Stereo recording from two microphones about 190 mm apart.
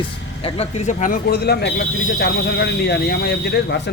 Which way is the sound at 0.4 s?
30° left (ahead or behind).